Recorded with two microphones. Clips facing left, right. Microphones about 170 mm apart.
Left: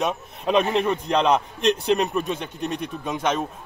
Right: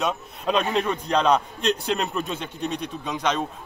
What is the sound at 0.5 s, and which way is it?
A man's voice, 5° left (ahead or behind).